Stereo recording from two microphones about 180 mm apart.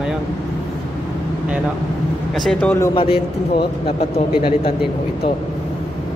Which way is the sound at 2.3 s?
5° left (ahead or behind).